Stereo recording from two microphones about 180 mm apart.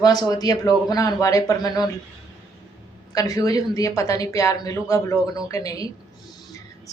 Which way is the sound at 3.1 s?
20° left (ahead or behind).